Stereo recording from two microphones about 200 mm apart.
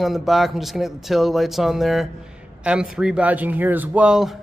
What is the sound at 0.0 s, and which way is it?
A man's voice, centre (ahead or behind).